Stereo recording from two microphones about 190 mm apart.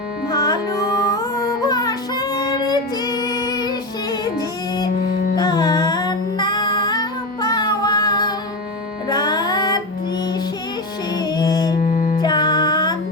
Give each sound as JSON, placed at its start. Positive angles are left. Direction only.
{"t": 0.3, "sound": "music", "side_deg": 20}
{"t": 11.1, "sound": "music", "side_deg": 20}
{"t": 11.8, "sound": "music", "side_deg": 45}
{"t": 12.2, "sound": "music", "side_deg": 20}